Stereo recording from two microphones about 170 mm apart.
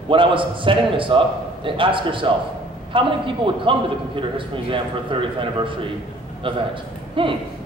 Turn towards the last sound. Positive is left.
turn(degrees=-30)  # may be behind; listen again after turning